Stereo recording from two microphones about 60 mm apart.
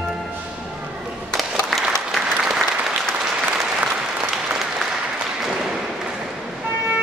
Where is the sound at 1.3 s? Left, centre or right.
Centre.